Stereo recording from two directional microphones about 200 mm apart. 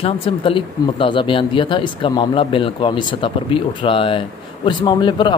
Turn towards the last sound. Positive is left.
turn(degrees=25)  # may be behind; listen again after turning